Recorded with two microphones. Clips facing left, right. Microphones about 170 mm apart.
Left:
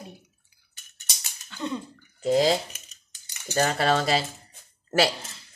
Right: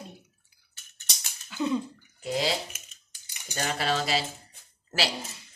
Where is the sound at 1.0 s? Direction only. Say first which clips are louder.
Even; 5° right (ahead or behind).